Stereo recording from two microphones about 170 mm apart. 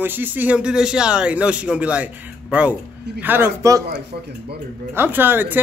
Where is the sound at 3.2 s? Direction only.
10° right (ahead or behind).